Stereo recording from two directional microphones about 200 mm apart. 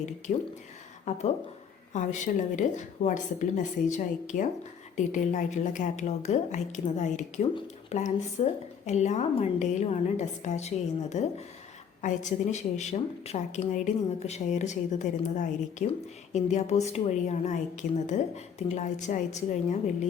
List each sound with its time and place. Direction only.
0.3 s a woman's voice: 40° left (ahead or behind)